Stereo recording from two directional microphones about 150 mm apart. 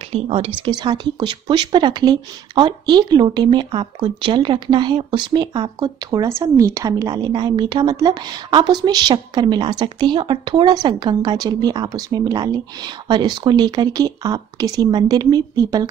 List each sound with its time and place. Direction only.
0.1 s speech: 40° right (ahead or behind)
0.6 s a woman's voice: 30° right (ahead or behind)